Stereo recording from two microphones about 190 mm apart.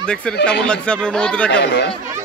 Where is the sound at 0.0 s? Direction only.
5° left (ahead or behind).